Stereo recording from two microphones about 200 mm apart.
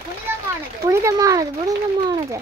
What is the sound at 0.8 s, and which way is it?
Speech, 15° right (ahead or behind).